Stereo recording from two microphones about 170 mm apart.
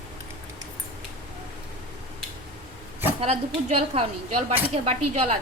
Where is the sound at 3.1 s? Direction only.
35° right (ahead or behind).